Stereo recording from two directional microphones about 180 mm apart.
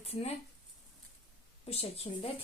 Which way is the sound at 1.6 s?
35° left (ahead or behind).